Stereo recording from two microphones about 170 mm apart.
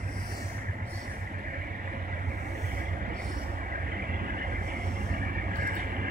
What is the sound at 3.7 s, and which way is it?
Vehicle, 60° right (ahead or behind).